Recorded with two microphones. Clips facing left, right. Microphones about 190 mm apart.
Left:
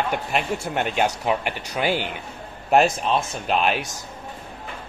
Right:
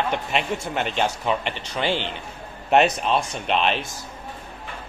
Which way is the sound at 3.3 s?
5° left (ahead or behind).